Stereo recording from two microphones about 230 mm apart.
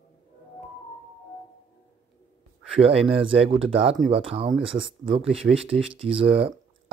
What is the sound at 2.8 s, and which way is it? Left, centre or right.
Speech, right.